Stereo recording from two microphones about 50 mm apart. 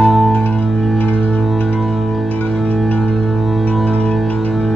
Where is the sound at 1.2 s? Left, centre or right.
Left.